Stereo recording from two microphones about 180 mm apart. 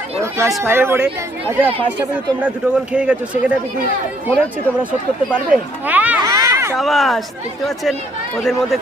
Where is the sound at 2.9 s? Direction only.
5° right (ahead or behind).